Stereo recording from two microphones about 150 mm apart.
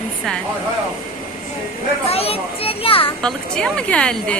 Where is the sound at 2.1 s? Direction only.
40° left (ahead or behind).